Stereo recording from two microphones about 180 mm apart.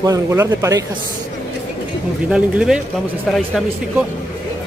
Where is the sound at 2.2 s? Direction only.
5° right (ahead or behind).